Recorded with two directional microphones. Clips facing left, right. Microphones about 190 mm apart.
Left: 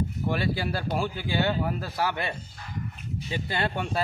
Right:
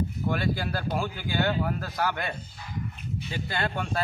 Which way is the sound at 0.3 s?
5° left (ahead or behind).